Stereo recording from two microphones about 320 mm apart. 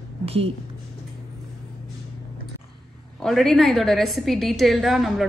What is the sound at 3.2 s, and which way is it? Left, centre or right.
A woman's voice, centre.